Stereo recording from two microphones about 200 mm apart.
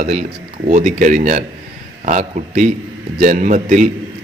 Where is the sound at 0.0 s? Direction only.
40° right (ahead or behind).